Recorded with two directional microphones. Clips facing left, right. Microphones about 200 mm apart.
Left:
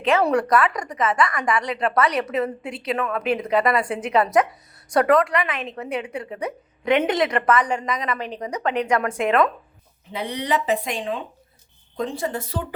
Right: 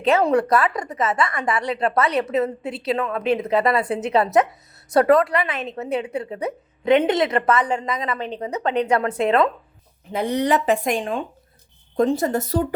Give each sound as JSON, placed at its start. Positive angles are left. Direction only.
{"t": 0.2, "sound": "a woman's voice", "side_deg": -20}
{"t": 1.9, "sound": "a woman's voice", "side_deg": -25}
{"t": 2.7, "sound": "a woman's voice", "side_deg": -35}
{"t": 10.1, "sound": "speech", "side_deg": -45}